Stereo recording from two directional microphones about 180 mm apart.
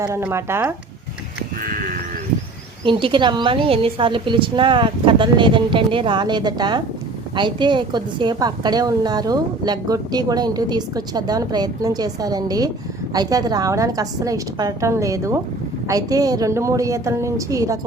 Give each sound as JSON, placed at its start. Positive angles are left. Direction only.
{"t": 0.0, "sound": "a woman's voice", "side_deg": -15}
{"t": 1.6, "sound": "sheep", "side_deg": -50}
{"t": 2.8, "sound": "a woman's voice", "side_deg": -25}